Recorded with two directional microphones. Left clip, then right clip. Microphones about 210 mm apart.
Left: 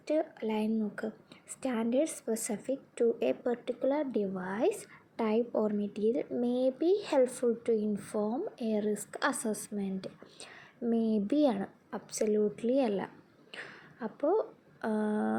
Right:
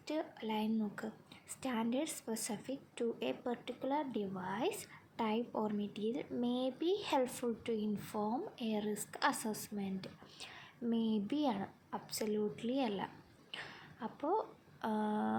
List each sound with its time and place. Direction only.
0.0 s a woman's voice: 5° left (ahead or behind)